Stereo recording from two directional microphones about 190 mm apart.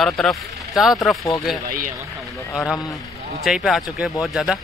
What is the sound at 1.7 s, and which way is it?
Speech, 45° right (ahead or behind).